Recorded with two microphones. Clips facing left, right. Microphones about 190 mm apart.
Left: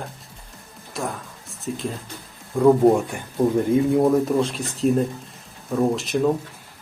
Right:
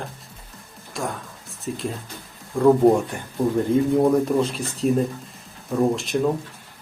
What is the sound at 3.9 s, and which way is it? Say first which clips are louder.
Speech: even; centre (ahead or behind).